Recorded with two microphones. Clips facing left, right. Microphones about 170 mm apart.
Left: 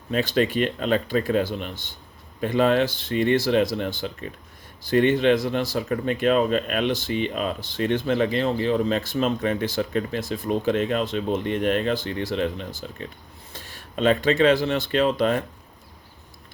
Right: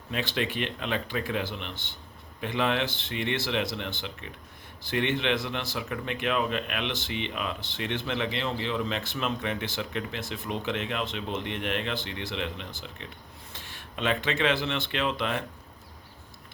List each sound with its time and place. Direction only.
0.1 s speech: 40° left (ahead or behind)